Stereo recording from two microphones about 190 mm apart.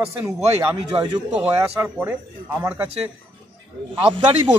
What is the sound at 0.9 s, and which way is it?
Speech, 20° right (ahead or behind).